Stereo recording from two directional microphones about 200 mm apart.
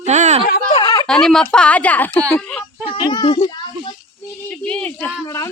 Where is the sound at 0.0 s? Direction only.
35° right (ahead or behind).